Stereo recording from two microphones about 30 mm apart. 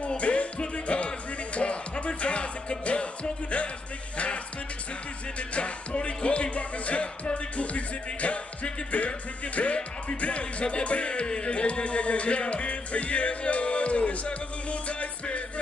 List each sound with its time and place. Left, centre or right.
0.2 s music: left
5.5 s music: left